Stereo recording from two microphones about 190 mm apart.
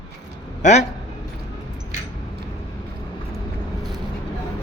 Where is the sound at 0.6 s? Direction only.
35° left (ahead or behind).